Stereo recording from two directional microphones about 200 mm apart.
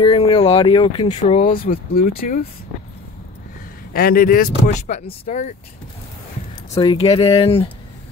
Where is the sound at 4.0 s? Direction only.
45° left (ahead or behind).